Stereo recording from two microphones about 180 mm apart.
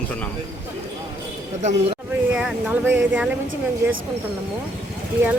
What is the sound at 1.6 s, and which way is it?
Speech, 35° right (ahead or behind).